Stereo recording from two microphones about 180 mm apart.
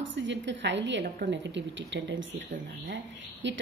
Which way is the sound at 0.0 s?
90° right.